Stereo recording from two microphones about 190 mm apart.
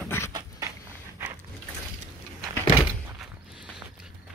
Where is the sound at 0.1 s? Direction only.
10° left (ahead or behind).